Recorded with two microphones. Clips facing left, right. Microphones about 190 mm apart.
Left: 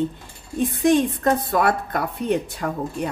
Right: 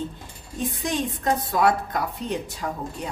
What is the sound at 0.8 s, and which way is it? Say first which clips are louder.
A woman's voice: left 11 dB; 55° left (ahead or behind).